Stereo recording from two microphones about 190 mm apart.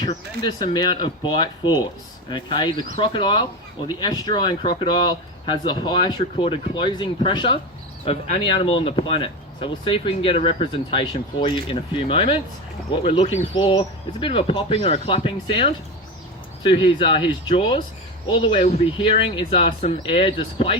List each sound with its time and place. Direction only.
0.0 s speech: 25° left (ahead or behind)